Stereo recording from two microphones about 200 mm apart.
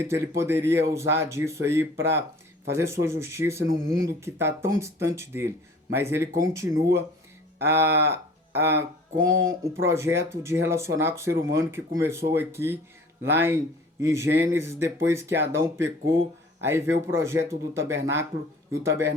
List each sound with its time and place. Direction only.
0.0 s speech: 15° right (ahead or behind)
9.8 s speech: 15° right (ahead or behind)